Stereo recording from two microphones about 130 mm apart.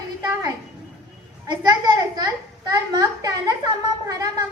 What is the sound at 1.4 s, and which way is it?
A woman's voice, 35° right (ahead or behind).